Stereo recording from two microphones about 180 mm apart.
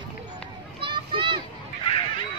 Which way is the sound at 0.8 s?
30° right (ahead or behind).